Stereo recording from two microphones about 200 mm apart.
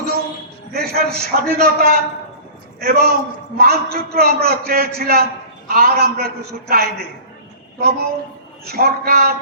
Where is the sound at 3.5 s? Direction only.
50° right (ahead or behind).